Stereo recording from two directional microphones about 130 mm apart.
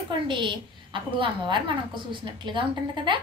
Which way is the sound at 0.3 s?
40° right (ahead or behind).